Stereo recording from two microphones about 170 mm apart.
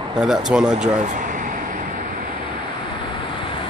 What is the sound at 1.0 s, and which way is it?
Air conditioning, 50° right (ahead or behind).